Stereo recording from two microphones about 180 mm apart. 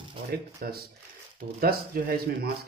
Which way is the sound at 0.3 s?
55° right (ahead or behind).